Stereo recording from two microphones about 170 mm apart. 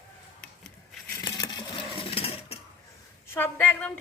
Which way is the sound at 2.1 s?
35° left (ahead or behind).